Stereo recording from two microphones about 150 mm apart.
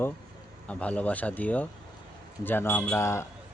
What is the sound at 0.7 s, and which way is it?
Speech, 10° left (ahead or behind).